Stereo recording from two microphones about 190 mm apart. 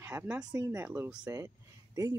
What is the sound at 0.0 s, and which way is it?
Speech, 15° right (ahead or behind).